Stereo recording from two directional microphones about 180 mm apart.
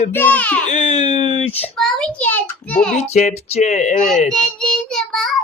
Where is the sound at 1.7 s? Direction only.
5° left (ahead or behind).